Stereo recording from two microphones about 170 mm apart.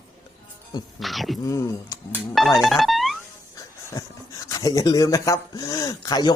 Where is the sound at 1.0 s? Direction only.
Centre (ahead or behind).